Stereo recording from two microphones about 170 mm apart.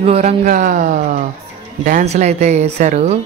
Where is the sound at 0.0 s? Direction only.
35° right (ahead or behind).